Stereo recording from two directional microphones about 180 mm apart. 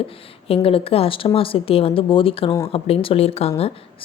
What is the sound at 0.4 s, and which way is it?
A woman's voice, 30° left (ahead or behind).